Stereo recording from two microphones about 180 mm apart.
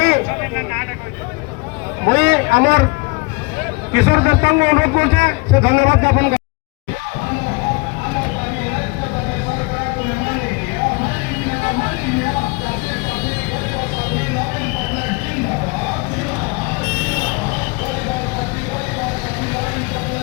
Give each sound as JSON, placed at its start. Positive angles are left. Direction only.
{"t": 2.0, "sound": "speech", "side_deg": -40}
{"t": 3.9, "sound": "a man's voice", "side_deg": -70}